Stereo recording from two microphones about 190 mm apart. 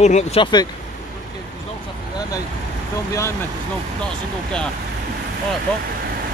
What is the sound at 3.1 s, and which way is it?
Speech, 15° left (ahead or behind).